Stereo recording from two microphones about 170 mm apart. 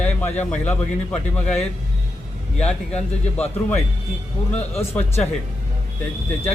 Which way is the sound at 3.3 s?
10° left (ahead or behind).